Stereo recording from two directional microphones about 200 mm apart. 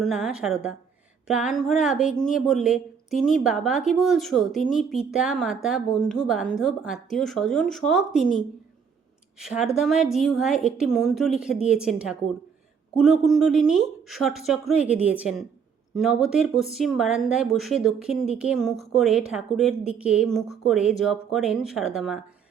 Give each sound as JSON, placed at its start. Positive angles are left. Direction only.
{"t": 0.0, "sound": "a woman's voice", "side_deg": -5}
{"t": 9.4, "sound": "a woman's voice", "side_deg": -5}